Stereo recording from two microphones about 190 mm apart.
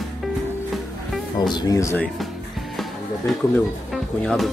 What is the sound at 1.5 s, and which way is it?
Speech, 20° left (ahead or behind).